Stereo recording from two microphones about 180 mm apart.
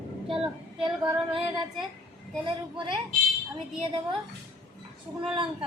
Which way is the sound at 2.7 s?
25° right (ahead or behind).